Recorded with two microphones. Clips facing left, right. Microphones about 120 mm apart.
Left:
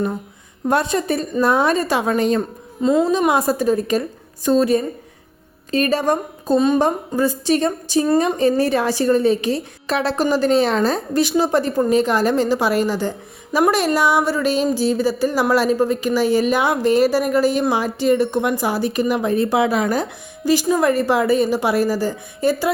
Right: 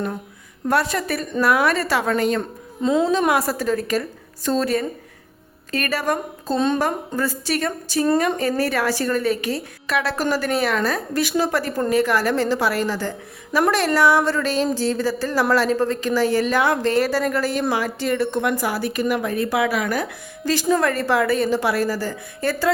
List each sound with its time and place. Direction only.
0.7 s a woman's voice: 20° left (ahead or behind)
2.8 s a woman's voice: 5° left (ahead or behind)
3.1 s a woman's voice: 15° left (ahead or behind)
20.4 s a woman's voice: 15° left (ahead or behind)